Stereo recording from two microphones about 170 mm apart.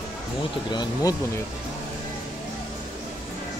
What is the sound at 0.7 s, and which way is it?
Speech, 25° left (ahead or behind).